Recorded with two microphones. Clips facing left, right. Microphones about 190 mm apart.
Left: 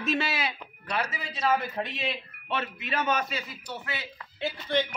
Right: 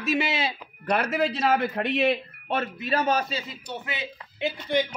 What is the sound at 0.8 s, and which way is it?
A man's voice, 55° right (ahead or behind).